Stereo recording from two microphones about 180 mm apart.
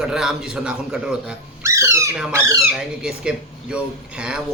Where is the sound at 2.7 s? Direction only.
5° right (ahead or behind).